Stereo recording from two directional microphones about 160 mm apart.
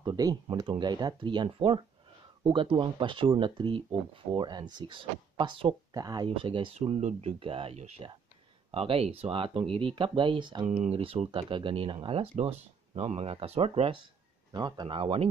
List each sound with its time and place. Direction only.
0.0 s speech: 25° right (ahead or behind)
14.5 s speech: 30° right (ahead or behind)